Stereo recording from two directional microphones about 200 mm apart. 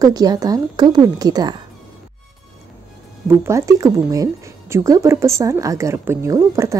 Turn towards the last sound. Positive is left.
turn(degrees=-15)  # may be behind; listen again after turning